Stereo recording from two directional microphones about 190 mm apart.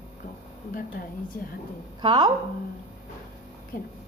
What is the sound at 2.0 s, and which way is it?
Speech, 25° right (ahead or behind).